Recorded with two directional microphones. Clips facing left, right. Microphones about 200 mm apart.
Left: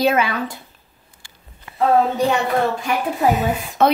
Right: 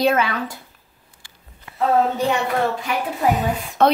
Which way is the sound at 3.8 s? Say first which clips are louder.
Even; 5° left (ahead or behind).